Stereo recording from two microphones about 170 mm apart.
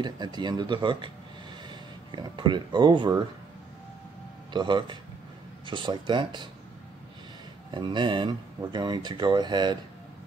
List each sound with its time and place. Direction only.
0.0 s speech: 25° right (ahead or behind)
4.5 s speech: 25° right (ahead or behind)
7.7 s speech: 30° right (ahead or behind)